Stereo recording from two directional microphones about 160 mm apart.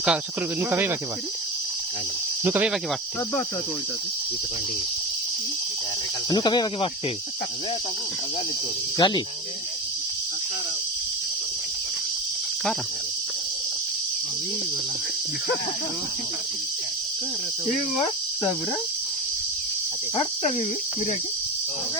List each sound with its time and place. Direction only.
0.7 s speech: 15° right (ahead or behind)
2.4 s speech: 10° right (ahead or behind)
6.3 s speech: 25° left (ahead or behind)
9.0 s speech: 30° left (ahead or behind)